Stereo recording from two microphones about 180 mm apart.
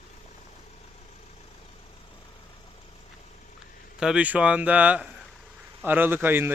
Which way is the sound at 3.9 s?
5° right (ahead or behind).